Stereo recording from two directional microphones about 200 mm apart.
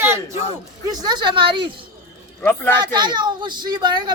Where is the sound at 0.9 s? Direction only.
20° right (ahead or behind).